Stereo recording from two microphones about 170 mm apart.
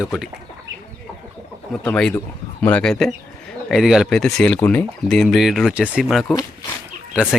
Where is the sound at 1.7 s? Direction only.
5° left (ahead or behind).